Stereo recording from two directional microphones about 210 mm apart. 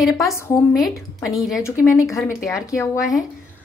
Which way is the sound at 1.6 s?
15° left (ahead or behind).